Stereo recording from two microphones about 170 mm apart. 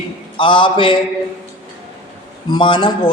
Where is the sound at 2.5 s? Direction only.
30° left (ahead or behind).